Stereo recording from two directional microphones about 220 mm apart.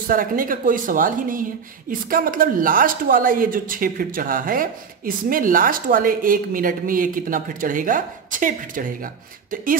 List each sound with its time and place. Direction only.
0.0 s speech: 40° right (ahead or behind)